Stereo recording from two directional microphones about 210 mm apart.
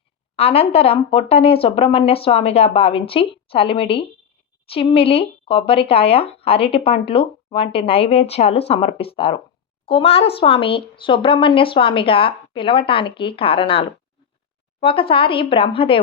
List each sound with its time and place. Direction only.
0.3 s speech: 30° left (ahead or behind)